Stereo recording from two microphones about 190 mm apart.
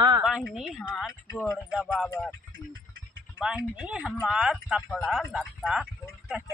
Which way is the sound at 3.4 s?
5° right (ahead or behind).